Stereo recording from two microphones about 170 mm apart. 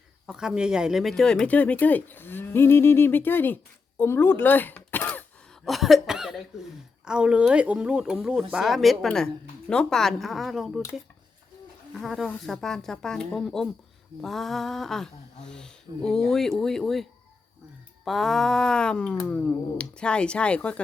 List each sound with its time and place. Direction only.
0.3 s speech: 5° right (ahead or behind)
5.6 s speech: centre (ahead or behind)
11.9 s speech: centre (ahead or behind)